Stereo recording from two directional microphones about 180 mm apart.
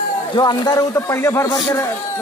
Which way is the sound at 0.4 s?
20° left (ahead or behind).